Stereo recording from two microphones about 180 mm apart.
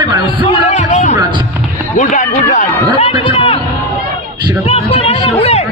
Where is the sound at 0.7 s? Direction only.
40° left (ahead or behind).